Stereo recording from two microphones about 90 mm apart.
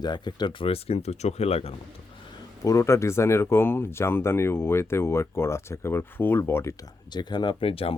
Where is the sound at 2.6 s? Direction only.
35° left (ahead or behind).